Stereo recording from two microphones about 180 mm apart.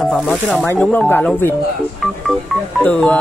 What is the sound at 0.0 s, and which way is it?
Speech, centre (ahead or behind).